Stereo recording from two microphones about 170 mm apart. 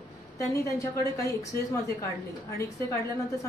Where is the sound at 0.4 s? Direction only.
20° left (ahead or behind).